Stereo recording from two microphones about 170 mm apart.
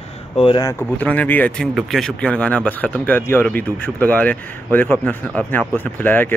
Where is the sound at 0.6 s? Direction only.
10° left (ahead or behind).